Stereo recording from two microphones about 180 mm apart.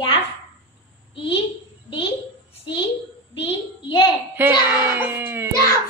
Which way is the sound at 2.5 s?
30° left (ahead or behind).